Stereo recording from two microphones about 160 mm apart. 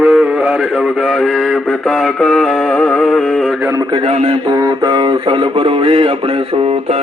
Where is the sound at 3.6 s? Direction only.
20° right (ahead or behind).